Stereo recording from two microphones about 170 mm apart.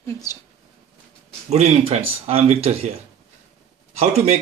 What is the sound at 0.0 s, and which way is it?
Speech, 20° left (ahead or behind).